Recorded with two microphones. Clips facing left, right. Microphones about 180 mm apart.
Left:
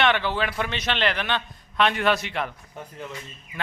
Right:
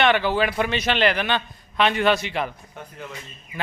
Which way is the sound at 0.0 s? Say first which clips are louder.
Right 3 dB; 5° right (ahead or behind).